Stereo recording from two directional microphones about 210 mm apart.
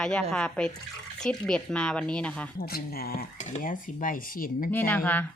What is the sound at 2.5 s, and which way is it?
Speech, 45° left (ahead or behind).